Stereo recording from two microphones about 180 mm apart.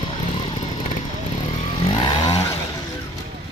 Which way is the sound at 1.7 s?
30° left (ahead or behind).